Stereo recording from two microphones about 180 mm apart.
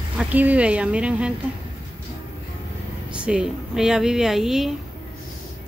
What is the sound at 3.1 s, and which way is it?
Speech, 5° right (ahead or behind).